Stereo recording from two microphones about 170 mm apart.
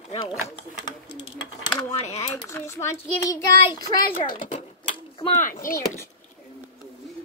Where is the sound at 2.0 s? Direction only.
40° left (ahead or behind).